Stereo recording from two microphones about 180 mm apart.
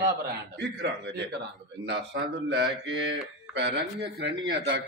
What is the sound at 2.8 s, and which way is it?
Speech, 80° right.